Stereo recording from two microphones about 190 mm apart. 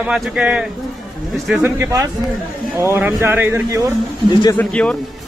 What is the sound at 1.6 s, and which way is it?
Speech, 15° right (ahead or behind).